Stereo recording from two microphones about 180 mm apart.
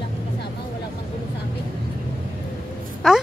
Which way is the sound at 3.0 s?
Centre (ahead or behind).